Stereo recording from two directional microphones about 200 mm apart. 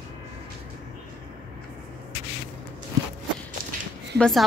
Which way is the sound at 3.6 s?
45° right (ahead or behind).